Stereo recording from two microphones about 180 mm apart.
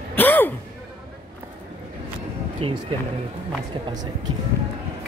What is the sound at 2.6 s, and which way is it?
Speech, 30° right (ahead or behind).